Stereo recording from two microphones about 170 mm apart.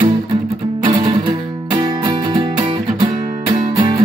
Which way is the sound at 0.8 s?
30° right (ahead or behind).